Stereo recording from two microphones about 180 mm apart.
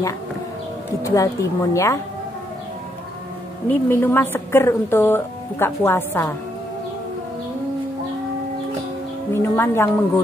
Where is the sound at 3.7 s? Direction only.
10° left (ahead or behind).